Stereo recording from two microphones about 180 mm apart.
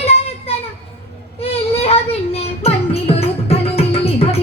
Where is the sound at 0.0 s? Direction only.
35° left (ahead or behind).